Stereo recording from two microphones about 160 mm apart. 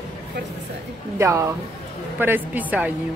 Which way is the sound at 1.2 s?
15° right (ahead or behind).